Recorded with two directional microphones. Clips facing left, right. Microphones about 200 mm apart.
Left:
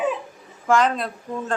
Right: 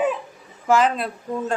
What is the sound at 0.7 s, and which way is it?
Speech, 5° right (ahead or behind).